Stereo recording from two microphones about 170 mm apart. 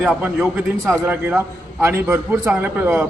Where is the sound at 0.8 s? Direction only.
10° right (ahead or behind).